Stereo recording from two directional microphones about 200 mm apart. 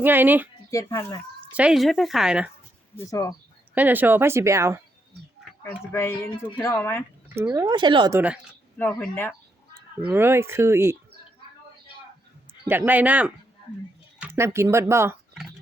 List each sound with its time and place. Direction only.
0.0 s speech: 10° right (ahead or behind)
0.7 s speech: 15° left (ahead or behind)
1.5 s speech: 5° right (ahead or behind)
3.1 s speech: 15° left (ahead or behind)
3.8 s speech: 10° right (ahead or behind)
5.6 s speech: 15° left (ahead or behind)
7.3 s speech: 15° right (ahead or behind)
8.8 s speech: 10° left (ahead or behind)
10.1 s speech: 10° right (ahead or behind)
12.6 s speech: 10° right (ahead or behind)